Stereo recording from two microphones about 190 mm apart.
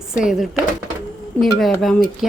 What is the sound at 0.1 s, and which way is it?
Speech, centre (ahead or behind).